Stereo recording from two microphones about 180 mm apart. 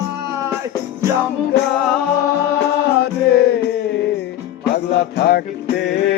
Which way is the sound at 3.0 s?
60° left (ahead or behind).